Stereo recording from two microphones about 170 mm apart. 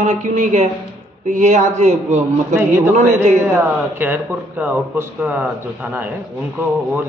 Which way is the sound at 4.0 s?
10° right (ahead or behind).